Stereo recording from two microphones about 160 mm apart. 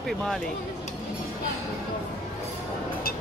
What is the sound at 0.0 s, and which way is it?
Speech, centre (ahead or behind).